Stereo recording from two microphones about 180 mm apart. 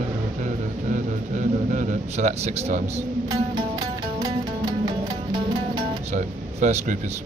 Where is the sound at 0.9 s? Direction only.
45° right (ahead or behind).